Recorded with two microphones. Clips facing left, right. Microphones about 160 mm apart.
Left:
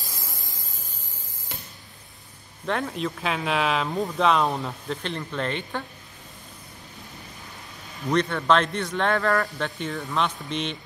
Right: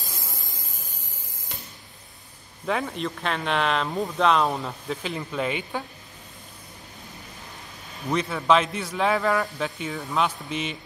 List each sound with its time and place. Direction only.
0.2 s static: 20° right (ahead or behind)
2.6 s speech: centre (ahead or behind)
8.1 s speech: 5° right (ahead or behind)